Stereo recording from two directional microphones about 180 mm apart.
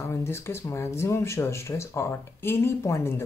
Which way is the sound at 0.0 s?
15° left (ahead or behind).